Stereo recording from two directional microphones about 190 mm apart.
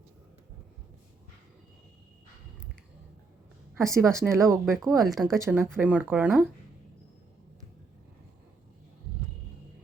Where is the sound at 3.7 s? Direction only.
15° right (ahead or behind).